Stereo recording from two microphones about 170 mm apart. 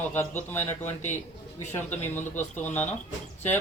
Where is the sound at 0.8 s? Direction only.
45° left (ahead or behind).